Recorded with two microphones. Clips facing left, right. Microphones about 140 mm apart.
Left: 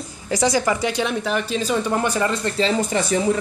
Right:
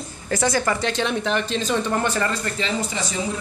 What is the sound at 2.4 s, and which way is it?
Speech, 35° left (ahead or behind).